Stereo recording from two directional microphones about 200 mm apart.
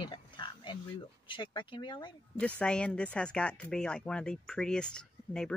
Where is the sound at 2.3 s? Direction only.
5° left (ahead or behind).